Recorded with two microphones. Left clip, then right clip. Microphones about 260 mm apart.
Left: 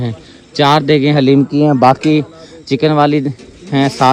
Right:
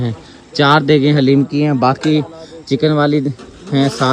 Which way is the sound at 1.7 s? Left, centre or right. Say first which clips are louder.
Left 4 dB; left.